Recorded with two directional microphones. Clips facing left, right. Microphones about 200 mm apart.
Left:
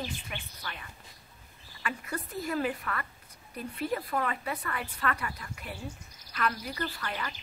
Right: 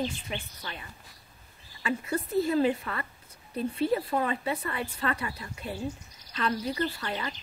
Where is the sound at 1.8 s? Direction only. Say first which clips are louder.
Right 6 dB; 25° right (ahead or behind).